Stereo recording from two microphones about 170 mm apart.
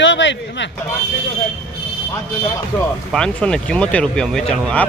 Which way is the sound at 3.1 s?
5° left (ahead or behind).